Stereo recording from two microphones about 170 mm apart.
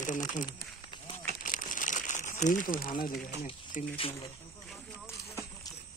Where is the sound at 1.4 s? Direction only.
50° left (ahead or behind).